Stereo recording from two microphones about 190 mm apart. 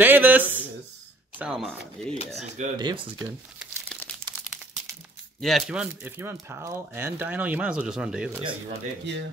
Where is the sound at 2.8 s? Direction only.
20° right (ahead or behind).